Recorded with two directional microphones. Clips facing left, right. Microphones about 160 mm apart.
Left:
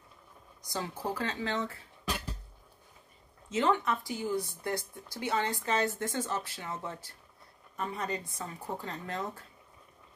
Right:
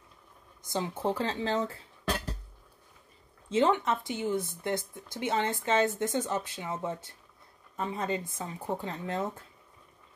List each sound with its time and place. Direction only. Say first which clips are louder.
0.7 s speech: right 5 dB; 20° right (ahead or behind)
3.4 s speech: right 3 dB; 25° right (ahead or behind)